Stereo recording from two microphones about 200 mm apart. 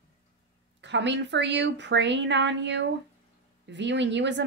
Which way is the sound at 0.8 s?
65° right (ahead or behind).